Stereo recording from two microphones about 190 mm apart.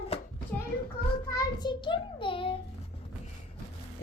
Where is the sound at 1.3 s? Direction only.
20° left (ahead or behind).